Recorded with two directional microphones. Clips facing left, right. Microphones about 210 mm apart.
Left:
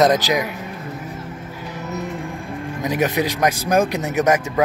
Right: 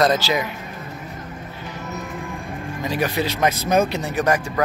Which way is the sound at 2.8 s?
20° left (ahead or behind).